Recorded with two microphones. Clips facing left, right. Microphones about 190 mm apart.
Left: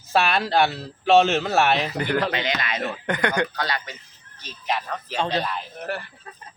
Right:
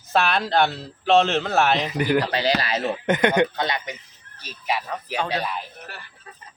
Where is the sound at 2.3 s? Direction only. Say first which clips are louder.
Right 4 dB; 35° right (ahead or behind).